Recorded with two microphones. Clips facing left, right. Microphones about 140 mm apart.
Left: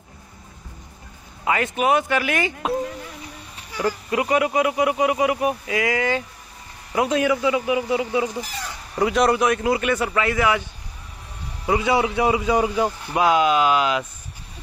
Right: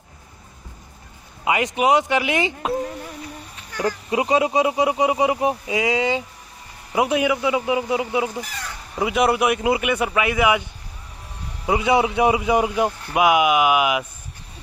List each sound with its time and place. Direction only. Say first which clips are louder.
1.4 s speech: right 1 dB; 15° right (ahead or behind)
3.8 s speech: right 1 dB; 20° right (ahead or behind)
8.9 s a man's voice: left 1 dB; 5° right (ahead or behind)